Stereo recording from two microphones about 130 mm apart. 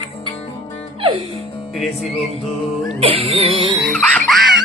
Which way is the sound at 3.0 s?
45° right (ahead or behind).